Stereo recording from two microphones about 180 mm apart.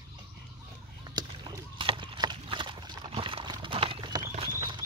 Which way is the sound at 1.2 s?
20° right (ahead or behind).